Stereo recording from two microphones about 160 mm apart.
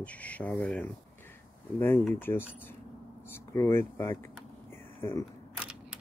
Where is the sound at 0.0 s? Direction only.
10° left (ahead or behind).